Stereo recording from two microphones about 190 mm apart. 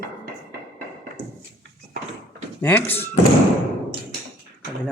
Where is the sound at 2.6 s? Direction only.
10° left (ahead or behind).